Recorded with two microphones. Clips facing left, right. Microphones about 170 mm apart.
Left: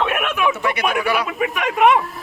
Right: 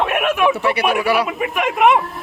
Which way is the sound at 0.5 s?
35° right (ahead or behind).